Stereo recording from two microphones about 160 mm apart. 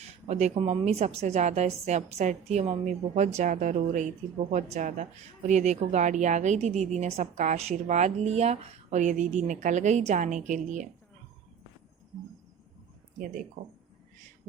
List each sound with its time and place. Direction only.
0.0 s speech: 45° right (ahead or behind)